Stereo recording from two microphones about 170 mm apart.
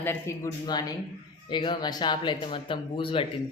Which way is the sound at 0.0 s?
15° left (ahead or behind).